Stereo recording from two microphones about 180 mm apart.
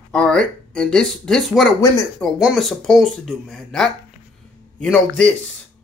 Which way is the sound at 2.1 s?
Centre (ahead or behind).